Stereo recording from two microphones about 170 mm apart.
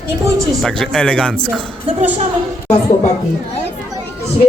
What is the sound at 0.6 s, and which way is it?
Speech, centre (ahead or behind).